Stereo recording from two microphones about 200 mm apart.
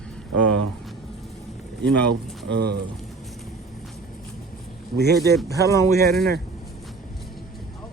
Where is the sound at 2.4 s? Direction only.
55° right (ahead or behind).